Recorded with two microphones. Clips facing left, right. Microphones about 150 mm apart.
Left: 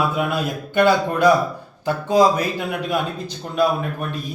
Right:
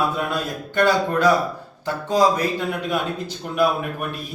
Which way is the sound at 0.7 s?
10° left (ahead or behind).